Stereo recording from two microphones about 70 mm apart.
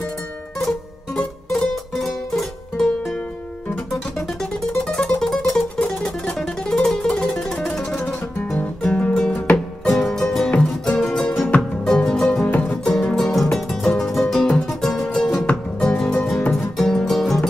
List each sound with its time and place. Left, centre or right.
1.5 s music: centre
3.2 s music: centre
3.9 s guitar: centre
4.8 s music: centre
12.4 s music: centre
12.8 s music: centre
15.4 s music: centre
16.3 s music: centre